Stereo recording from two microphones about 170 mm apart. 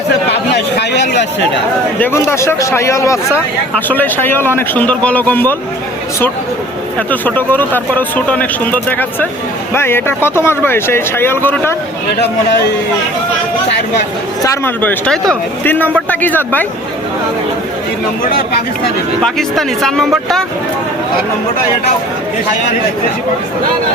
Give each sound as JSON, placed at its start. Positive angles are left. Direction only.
{"t": 0.5, "sound": "a sound", "side_deg": 90}
{"t": 2.0, "sound": "a man's voice", "side_deg": 15}
{"t": 7.1, "sound": "a man's voice", "side_deg": 10}
{"t": 12.2, "sound": "a man's voice", "side_deg": 75}
{"t": 14.4, "sound": "a man's voice", "side_deg": 10}
{"t": 19.2, "sound": "speech", "side_deg": 0}